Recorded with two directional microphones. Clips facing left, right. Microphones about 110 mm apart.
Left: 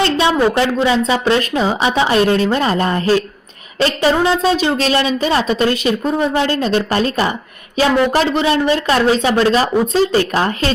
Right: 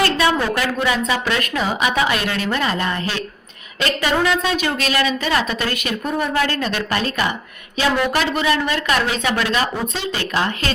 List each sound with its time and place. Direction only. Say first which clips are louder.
0.0 s a woman's voice: left 4 dB; 25° left (ahead or behind)